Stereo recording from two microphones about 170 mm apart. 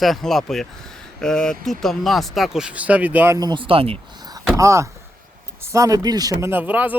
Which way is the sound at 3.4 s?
25° right (ahead or behind).